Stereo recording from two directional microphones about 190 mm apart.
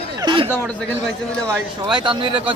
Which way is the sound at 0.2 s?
25° right (ahead or behind).